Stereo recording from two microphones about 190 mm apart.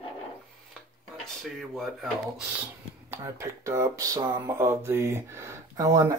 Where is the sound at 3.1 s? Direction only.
15° right (ahead or behind).